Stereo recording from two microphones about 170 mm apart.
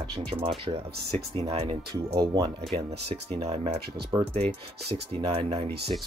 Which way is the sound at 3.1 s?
35° right (ahead or behind).